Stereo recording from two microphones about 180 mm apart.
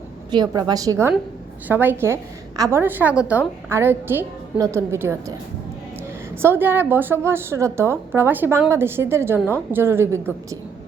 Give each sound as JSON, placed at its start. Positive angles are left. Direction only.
{"t": 0.3, "sound": "a woman's voice", "side_deg": -25}
{"t": 6.4, "sound": "a woman's voice", "side_deg": -10}